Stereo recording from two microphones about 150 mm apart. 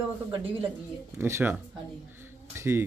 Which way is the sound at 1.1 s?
15° right (ahead or behind).